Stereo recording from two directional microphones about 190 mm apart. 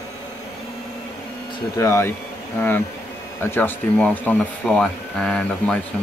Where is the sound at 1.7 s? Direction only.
15° left (ahead or behind).